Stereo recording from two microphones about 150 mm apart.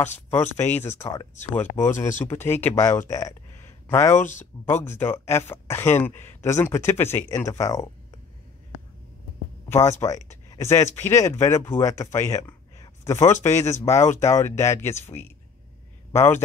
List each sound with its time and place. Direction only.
0.6 s speech: 15° left (ahead or behind)
9.7 s speech: 15° left (ahead or behind)